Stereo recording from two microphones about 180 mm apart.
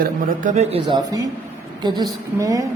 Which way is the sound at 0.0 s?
40° right (ahead or behind).